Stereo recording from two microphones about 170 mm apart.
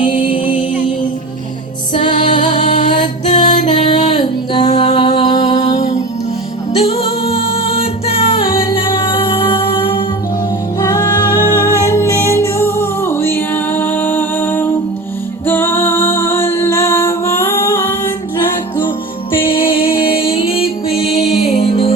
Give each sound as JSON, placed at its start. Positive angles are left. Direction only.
{"t": 1.9, "sound": "music", "side_deg": 25}
{"t": 2.5, "sound": "music", "side_deg": 45}
{"t": 3.3, "sound": "music", "side_deg": 25}
{"t": 5.7, "sound": "music", "side_deg": 40}
{"t": 10.8, "sound": "music", "side_deg": 20}
{"t": 19.3, "sound": "music", "side_deg": 30}